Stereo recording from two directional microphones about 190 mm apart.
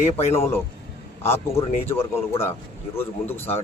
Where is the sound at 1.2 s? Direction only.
15° left (ahead or behind).